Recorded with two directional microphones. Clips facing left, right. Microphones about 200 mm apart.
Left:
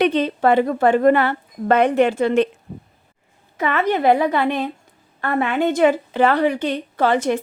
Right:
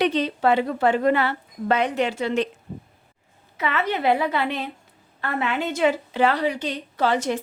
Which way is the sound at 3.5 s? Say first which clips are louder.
Left 5 dB; 50° left (ahead or behind).